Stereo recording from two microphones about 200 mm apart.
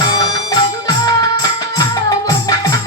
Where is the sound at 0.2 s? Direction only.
20° left (ahead or behind).